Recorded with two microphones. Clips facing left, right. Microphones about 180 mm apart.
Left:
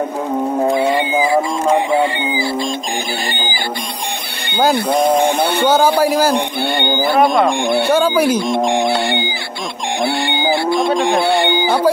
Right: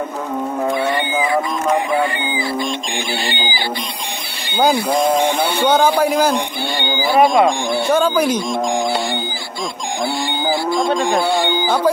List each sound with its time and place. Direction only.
0.6 s music: 25° left (ahead or behind)
3.3 s music: 45° left (ahead or behind)
5.7 s a man's voice: 10° left (ahead or behind)
6.3 s speech: 55° left (ahead or behind)
7.2 s a man's voice: centre (ahead or behind)
8.6 s music: 65° left (ahead or behind)
10.0 s cattle: 65° left (ahead or behind)
11.0 s speech: 65° left (ahead or behind)
11.6 s a man's voice: 10° left (ahead or behind)